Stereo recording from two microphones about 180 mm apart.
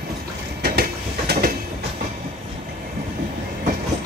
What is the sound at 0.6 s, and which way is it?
Train, 60° right (ahead or behind).